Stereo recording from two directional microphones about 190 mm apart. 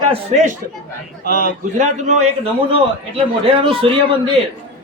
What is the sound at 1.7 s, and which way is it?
Speech, 35° right (ahead or behind).